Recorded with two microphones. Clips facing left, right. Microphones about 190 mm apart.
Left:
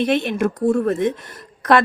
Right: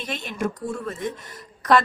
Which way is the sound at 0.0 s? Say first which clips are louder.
Left 10 dB; 65° left (ahead or behind).